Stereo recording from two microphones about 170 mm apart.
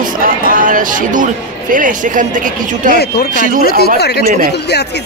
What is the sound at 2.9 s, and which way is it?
Speech, 65° left (ahead or behind).